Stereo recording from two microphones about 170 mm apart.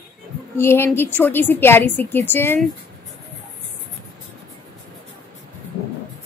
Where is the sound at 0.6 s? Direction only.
15° left (ahead or behind).